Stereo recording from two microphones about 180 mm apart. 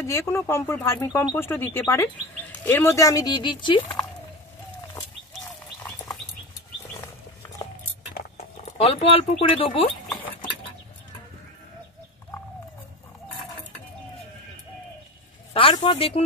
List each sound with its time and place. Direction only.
0.0 s speech: 15° left (ahead or behind)
8.4 s speech: 35° left (ahead or behind)
15.5 s a woman's voice: 30° left (ahead or behind)